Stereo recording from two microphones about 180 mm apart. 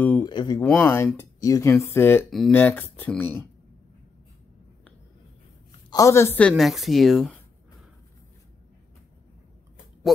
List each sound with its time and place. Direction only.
0.0 s a sound: 10° left (ahead or behind)
0.3 s speech: 25° left (ahead or behind)
0.7 s a woman's voice: centre (ahead or behind)
0.9 s speech: 15° left (ahead or behind)
5.9 s a woman's voice: 20° left (ahead or behind); by 7.3 s centre (ahead or behind)